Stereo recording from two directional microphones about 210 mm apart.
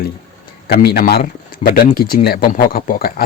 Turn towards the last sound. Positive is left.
turn(degrees=45)  # may be behind; listen again after turning